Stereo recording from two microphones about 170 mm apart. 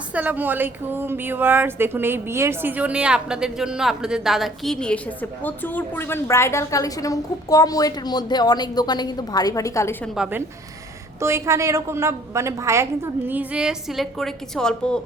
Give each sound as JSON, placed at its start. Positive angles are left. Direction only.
{"t": 0.1, "sound": "speech", "side_deg": -10}
{"t": 10.2, "sound": "a woman's voice", "side_deg": -10}